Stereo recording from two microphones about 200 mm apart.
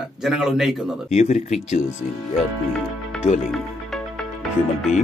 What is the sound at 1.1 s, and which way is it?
Speech, 35° left (ahead or behind).